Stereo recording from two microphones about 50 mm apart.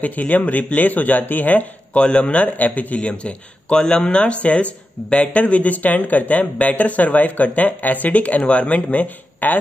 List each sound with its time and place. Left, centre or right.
0.0 s speech: left
2.0 s a man's voice: left